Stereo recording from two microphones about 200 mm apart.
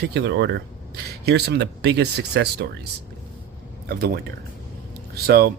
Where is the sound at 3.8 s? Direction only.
50° right (ahead or behind).